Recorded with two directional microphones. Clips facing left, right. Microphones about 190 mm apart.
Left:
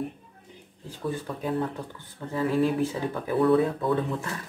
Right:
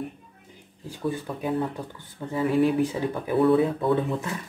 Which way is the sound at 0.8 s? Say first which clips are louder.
Right 2 dB; 15° right (ahead or behind).